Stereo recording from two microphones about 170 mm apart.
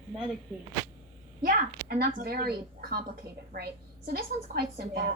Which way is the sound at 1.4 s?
55° right (ahead or behind).